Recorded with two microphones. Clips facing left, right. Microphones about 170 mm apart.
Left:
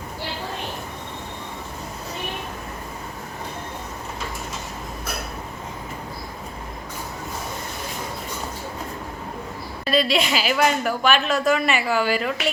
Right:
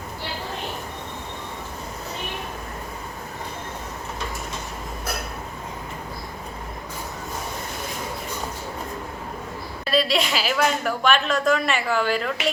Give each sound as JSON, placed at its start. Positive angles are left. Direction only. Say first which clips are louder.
{"t": 9.9, "sound": "a woman's voice", "louder": "left 1 dB", "side_deg": 0}